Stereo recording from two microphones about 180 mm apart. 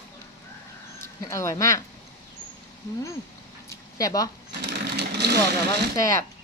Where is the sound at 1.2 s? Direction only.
15° left (ahead or behind).